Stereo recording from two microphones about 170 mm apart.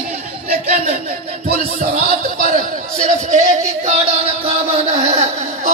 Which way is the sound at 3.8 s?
40° right (ahead or behind).